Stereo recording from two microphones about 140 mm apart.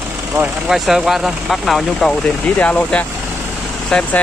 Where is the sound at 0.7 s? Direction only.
5° right (ahead or behind).